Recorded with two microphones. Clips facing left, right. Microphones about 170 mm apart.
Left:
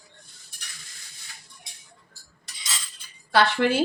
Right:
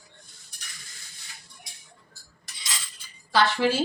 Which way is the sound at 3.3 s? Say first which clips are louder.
Left 2 dB; 60° left (ahead or behind).